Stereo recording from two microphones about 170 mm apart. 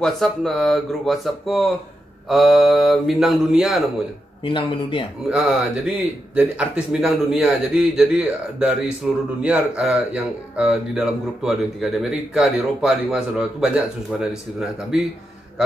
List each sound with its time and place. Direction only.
0.0 s speech: centre (ahead or behind)
4.5 s speech: 30° left (ahead or behind)
5.3 s speech: 5° right (ahead or behind)